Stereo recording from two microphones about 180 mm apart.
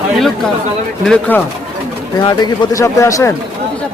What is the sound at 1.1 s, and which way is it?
Speech, 10° left (ahead or behind).